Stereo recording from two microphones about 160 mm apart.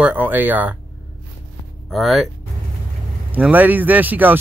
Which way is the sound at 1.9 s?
Centre (ahead or behind).